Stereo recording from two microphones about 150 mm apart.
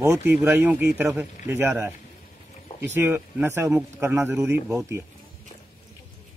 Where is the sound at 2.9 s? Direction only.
15° right (ahead or behind).